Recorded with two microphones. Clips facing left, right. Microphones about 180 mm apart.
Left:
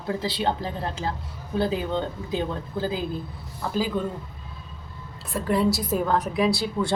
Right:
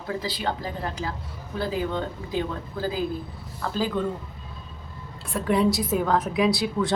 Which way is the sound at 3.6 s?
20° left (ahead or behind).